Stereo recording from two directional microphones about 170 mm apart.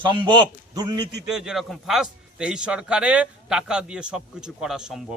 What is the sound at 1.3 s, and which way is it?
A man's voice, 5° right (ahead or behind).